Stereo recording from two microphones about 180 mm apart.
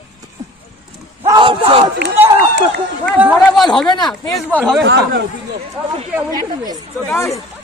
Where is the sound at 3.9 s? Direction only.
25° left (ahead or behind).